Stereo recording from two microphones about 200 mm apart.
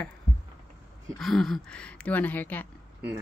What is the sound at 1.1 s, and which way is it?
Speech, centre (ahead or behind).